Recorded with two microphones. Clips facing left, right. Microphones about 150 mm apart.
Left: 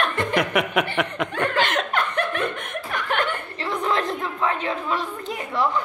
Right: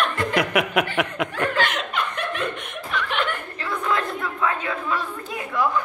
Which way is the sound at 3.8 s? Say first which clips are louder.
Left 1 dB; 30° left (ahead or behind).